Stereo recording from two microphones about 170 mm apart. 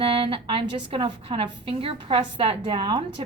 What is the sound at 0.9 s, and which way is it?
A woman's voice, 30° right (ahead or behind).